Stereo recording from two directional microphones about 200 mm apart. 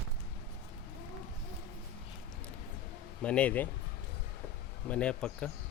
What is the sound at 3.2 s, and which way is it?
Speech, 5° left (ahead or behind).